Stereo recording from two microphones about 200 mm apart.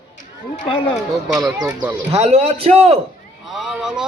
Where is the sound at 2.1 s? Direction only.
30° right (ahead or behind).